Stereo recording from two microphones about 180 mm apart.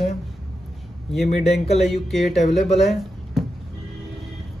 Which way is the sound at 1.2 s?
35° left (ahead or behind).